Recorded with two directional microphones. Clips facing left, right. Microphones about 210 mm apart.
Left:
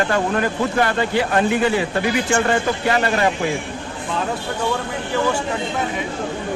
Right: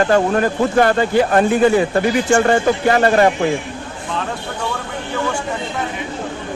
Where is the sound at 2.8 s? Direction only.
45° right (ahead or behind).